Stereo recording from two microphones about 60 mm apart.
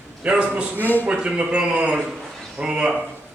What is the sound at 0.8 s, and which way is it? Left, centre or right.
Speech, left.